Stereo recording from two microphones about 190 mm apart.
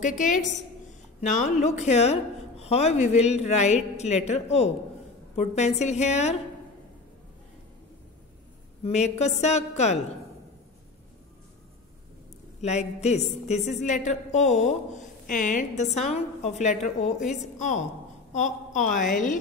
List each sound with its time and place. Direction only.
0.0 s a woman's voice: 40° left (ahead or behind)
8.8 s a woman's voice: 35° left (ahead or behind)
12.6 s a woman's voice: 35° left (ahead or behind)